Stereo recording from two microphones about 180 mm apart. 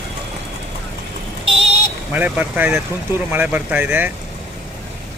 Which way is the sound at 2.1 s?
10° right (ahead or behind).